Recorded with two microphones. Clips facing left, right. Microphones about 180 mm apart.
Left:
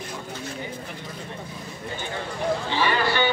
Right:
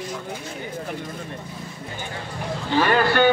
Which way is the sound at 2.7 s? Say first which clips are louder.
Right 8 dB; 50° right (ahead or behind).